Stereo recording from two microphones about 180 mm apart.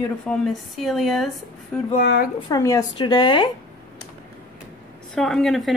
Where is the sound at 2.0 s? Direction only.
60° left (ahead or behind).